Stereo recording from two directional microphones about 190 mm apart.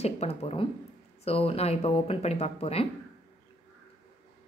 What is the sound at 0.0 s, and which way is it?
Speech, 35° left (ahead or behind).